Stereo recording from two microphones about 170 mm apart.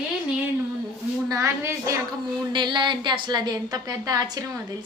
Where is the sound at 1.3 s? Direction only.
15° right (ahead or behind).